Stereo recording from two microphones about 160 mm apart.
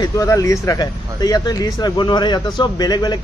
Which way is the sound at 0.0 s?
20° left (ahead or behind).